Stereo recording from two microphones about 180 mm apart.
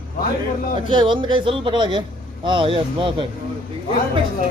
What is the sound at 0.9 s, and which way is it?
A man's voice, 25° right (ahead or behind).